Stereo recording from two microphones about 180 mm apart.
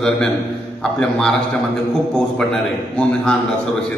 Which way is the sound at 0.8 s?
5° left (ahead or behind).